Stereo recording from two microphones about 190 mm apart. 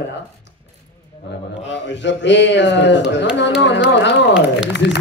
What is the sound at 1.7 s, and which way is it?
Speech, 70° left (ahead or behind).